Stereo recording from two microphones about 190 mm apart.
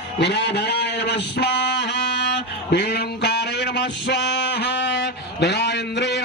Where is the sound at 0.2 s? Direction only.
65° left (ahead or behind).